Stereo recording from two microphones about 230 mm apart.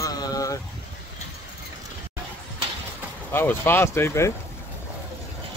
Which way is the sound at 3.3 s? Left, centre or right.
Centre.